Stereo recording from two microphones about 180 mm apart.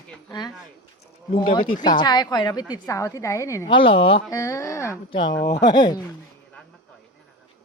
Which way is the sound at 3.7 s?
30° left (ahead or behind).